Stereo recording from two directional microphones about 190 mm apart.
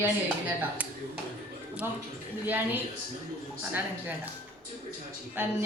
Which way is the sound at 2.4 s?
10° right (ahead or behind).